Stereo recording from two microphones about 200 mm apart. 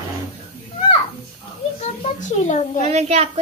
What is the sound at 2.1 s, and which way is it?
Speech, 35° left (ahead or behind).